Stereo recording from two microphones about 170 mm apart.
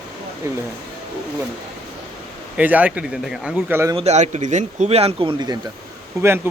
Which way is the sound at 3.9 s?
40° right (ahead or behind).